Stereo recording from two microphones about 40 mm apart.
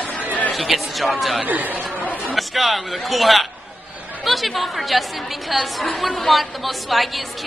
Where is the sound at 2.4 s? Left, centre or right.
Centre.